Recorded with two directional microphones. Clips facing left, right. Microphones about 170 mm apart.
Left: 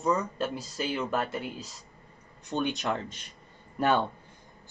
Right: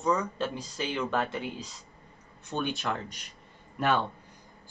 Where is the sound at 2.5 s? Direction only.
20° left (ahead or behind).